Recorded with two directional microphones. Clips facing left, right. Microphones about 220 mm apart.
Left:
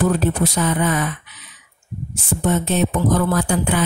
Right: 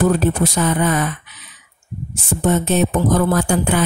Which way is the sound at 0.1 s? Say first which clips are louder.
Right 2 dB; 45° right (ahead or behind).